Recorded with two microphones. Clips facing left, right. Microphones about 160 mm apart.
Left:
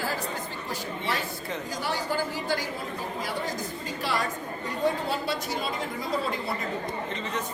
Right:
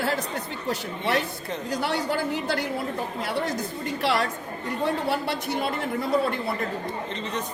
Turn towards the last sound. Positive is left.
turn(degrees=-60)  # may be behind; listen again after turning